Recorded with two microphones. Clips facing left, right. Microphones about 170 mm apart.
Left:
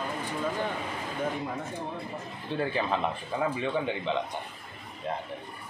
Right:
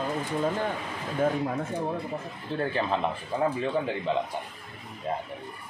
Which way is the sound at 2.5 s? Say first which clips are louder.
Right 1 dB; centre (ahead or behind).